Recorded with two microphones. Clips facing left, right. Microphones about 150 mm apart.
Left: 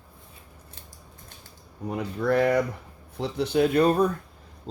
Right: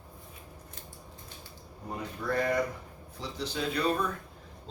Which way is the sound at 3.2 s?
60° left (ahead or behind).